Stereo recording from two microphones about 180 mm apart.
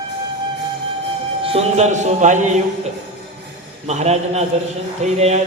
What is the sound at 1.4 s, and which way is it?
Speech, 35° right (ahead or behind).